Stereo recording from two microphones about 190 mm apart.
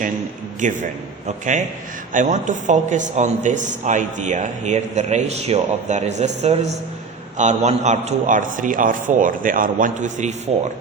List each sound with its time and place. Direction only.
0.6 s speech: 40° right (ahead or behind)
2.1 s a man's voice: 45° right (ahead or behind)